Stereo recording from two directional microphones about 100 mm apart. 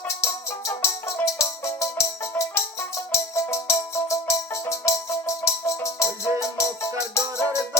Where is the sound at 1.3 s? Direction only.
30° left (ahead or behind).